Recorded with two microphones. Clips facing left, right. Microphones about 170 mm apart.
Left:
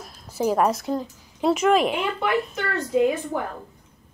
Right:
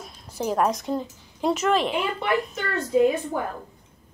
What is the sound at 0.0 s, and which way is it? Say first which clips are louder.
A woman's voice: left 4 dB; 5° left (ahead or behind).